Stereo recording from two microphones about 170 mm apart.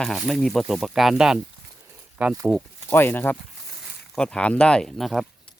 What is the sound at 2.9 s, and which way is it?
Speech, 10° left (ahead or behind).